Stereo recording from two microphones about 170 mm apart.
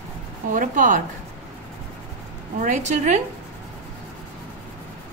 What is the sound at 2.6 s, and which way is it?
Speech, 45° right (ahead or behind).